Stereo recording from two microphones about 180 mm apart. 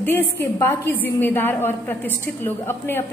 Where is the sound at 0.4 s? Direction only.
15° left (ahead or behind).